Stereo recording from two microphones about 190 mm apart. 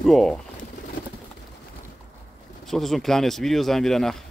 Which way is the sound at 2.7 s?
Centre (ahead or behind).